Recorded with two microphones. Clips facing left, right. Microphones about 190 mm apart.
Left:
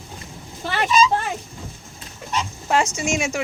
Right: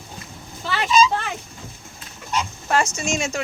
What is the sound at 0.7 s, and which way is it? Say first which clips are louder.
Vehicle: even; 50° left (ahead or behind).